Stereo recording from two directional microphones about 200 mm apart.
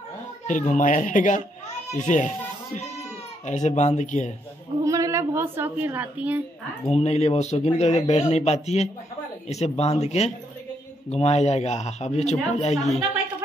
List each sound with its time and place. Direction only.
0.5 s speech: 40° left (ahead or behind)
4.8 s a woman's voice: 15° right (ahead or behind)
6.9 s speech: 35° left (ahead or behind)